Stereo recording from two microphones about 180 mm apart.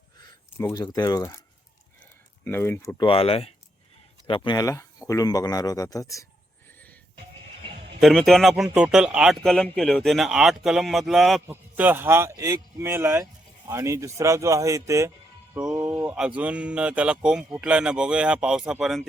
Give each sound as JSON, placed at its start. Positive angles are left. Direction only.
{"t": 0.3, "sound": "speech", "side_deg": 20}
{"t": 2.4, "sound": "speech", "side_deg": 10}
{"t": 3.0, "sound": "speech", "side_deg": 30}
{"t": 6.7, "sound": "music", "side_deg": 10}
{"t": 8.0, "sound": "speech", "side_deg": 0}
{"t": 11.4, "sound": "a man's voice", "side_deg": -10}